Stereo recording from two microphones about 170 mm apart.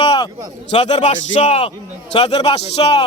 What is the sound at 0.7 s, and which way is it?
A man's voice, 35° left (ahead or behind).